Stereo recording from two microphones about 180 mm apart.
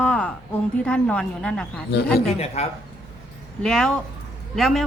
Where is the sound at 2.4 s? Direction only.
35° left (ahead or behind).